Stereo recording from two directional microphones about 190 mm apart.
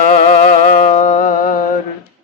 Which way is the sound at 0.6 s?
40° left (ahead or behind).